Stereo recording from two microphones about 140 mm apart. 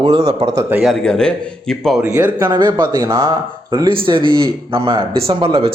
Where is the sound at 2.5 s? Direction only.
30° right (ahead or behind).